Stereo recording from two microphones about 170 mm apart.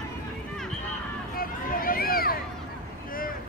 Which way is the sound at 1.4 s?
55° left (ahead or behind).